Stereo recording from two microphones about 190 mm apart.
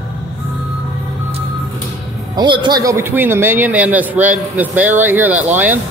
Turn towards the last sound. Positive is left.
turn(degrees=-10)  # may be behind; listen again after turning